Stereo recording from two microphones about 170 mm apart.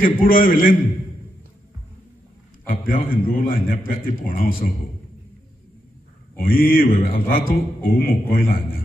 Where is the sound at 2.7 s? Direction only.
55° left (ahead or behind).